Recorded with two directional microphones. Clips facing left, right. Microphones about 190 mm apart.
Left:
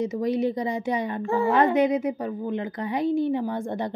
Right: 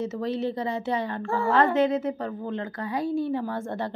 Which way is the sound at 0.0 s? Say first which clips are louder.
Left 4 dB; 15° left (ahead or behind).